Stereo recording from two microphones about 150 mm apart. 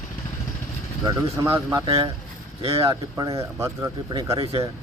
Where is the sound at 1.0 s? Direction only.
20° right (ahead or behind).